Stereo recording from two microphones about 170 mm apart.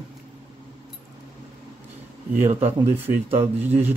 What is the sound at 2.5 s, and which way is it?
Speech, 40° right (ahead or behind).